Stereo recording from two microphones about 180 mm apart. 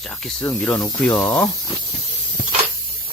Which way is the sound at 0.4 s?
10° left (ahead or behind).